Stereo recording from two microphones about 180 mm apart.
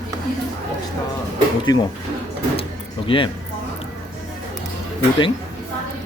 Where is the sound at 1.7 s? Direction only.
20° left (ahead or behind).